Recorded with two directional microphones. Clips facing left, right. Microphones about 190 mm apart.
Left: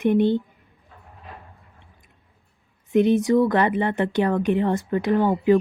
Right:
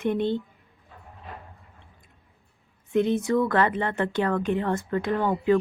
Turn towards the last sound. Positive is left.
turn(degrees=20)  # may be behind; listen again after turning